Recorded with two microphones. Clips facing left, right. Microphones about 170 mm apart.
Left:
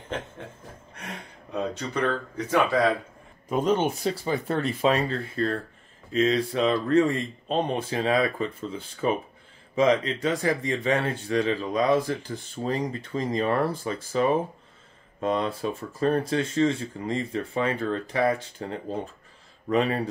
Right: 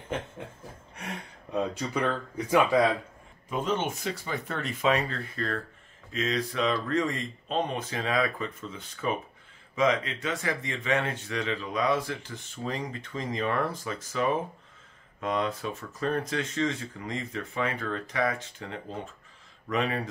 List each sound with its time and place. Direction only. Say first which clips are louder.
1.5 s speech: even; 10° right (ahead or behind)
3.4 s speech: left 6 dB; 40° left (ahead or behind)